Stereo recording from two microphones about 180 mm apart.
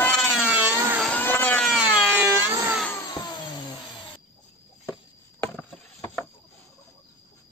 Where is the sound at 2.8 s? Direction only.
20° left (ahead or behind).